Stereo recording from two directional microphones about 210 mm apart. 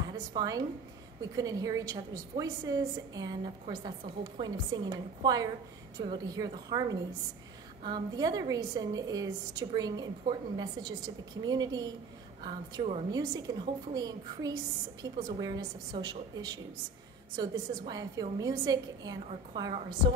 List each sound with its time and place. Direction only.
0.3 s a woman's voice: 20° right (ahead or behind)
13.1 s a woman's voice: 20° right (ahead or behind)